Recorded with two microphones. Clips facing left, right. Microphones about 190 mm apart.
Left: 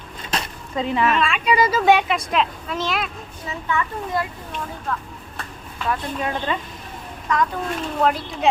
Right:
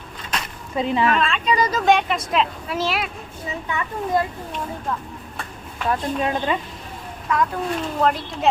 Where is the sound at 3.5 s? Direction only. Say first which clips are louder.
Left 3 dB; 20° right (ahead or behind).